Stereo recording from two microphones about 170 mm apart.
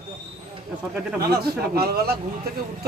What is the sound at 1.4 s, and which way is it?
Speech, 65° right (ahead or behind).